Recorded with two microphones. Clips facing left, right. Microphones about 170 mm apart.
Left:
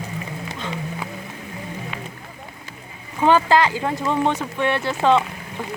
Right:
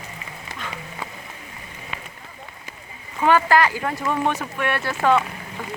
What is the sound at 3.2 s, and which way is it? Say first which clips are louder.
Speech: left 1 dB; 25° left (ahead or behind).